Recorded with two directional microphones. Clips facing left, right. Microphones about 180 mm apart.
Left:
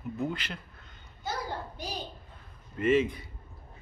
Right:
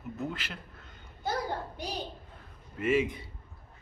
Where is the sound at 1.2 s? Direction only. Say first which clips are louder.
Right 3 dB; 60° right (ahead or behind).